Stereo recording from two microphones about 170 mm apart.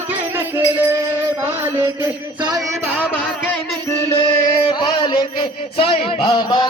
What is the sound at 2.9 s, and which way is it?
Music, 10° left (ahead or behind).